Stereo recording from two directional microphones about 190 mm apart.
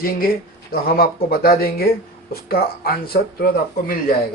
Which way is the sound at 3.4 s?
55° left (ahead or behind).